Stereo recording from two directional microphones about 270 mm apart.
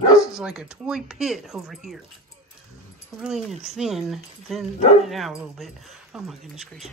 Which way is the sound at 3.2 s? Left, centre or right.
Centre.